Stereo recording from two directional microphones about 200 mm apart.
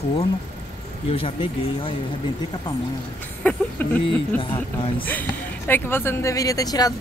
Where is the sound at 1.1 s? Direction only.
30° left (ahead or behind).